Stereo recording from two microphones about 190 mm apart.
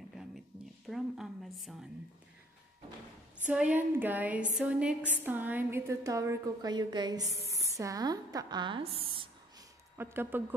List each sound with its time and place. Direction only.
0.8 s a woman's voice: centre (ahead or behind)
3.4 s a woman's voice: 5° right (ahead or behind); by 8.9 s 25° right (ahead or behind)
9.0 s a sound: 30° right (ahead or behind)
9.9 s a woman's voice: 10° right (ahead or behind)